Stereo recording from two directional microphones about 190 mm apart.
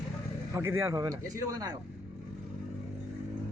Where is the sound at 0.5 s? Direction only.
15° right (ahead or behind).